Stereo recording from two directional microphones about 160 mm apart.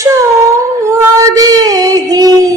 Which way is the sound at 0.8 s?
20° right (ahead or behind).